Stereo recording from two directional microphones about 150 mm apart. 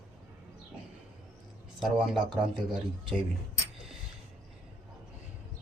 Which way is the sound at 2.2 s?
30° right (ahead or behind).